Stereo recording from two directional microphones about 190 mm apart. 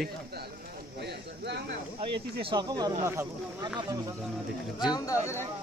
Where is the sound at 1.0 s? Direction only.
60° right (ahead or behind).